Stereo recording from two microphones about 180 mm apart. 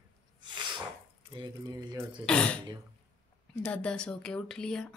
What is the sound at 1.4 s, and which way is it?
Speech, 25° right (ahead or behind).